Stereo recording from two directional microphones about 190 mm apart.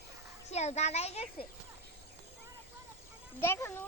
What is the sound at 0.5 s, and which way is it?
Speech, 35° left (ahead or behind).